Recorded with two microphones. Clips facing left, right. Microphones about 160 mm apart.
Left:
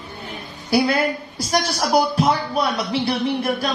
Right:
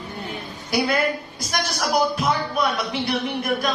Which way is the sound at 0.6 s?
30° left (ahead or behind).